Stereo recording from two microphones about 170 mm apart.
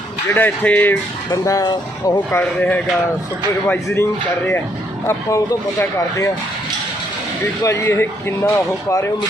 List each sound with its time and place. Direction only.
0.3 s speech: 10° left (ahead or behind); by 2.2 s 25° left (ahead or behind)
2.3 s speech: 10° left (ahead or behind)
5.8 s speech: 15° left (ahead or behind)
7.6 s speech: 15° left (ahead or behind)